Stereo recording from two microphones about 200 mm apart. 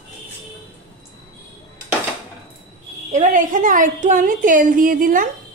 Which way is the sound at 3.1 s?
40° right (ahead or behind).